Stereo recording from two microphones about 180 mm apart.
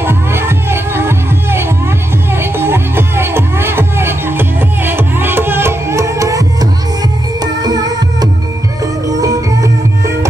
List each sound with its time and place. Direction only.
0.0 s music: 15° right (ahead or behind)